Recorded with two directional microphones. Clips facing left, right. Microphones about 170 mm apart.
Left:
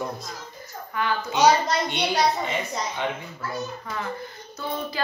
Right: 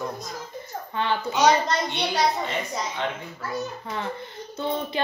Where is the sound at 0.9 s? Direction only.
25° right (ahead or behind).